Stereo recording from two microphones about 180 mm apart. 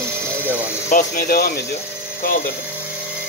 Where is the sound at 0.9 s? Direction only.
50° left (ahead or behind).